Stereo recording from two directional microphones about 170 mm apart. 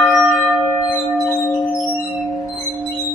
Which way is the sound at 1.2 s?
15° left (ahead or behind).